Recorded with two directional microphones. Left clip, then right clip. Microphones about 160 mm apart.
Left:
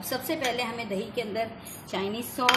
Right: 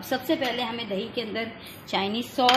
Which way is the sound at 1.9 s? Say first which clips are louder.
Right 5 dB; 40° right (ahead or behind).